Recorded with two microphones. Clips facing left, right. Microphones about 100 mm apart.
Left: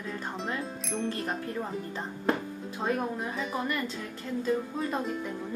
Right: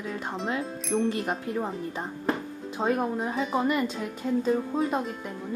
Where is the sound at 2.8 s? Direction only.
25° right (ahead or behind).